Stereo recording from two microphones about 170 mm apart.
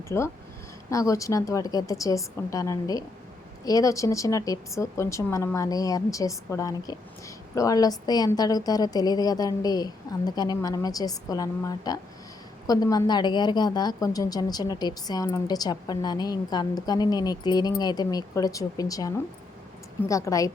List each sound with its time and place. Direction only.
0.1 s a woman's voice: 15° left (ahead or behind)